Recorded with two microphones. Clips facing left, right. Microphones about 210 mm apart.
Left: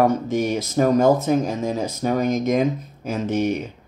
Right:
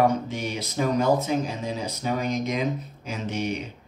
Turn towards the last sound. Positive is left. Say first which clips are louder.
# left 7 dB
turn(degrees=45)  # may be behind; listen again after turning